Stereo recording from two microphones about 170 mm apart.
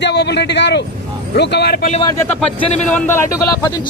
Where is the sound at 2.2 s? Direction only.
10° left (ahead or behind).